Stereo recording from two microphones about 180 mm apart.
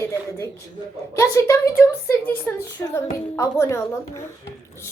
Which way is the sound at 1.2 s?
15° left (ahead or behind).